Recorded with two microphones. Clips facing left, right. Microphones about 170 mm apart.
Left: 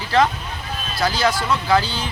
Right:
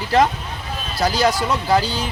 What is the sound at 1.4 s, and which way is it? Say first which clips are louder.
Speech: right 1 dB; 15° right (ahead or behind).